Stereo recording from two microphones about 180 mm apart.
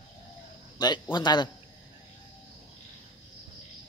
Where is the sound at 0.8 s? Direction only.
25° left (ahead or behind).